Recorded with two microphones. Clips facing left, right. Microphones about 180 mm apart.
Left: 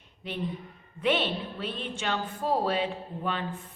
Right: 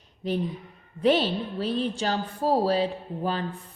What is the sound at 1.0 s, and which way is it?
A man's voice, 35° right (ahead or behind).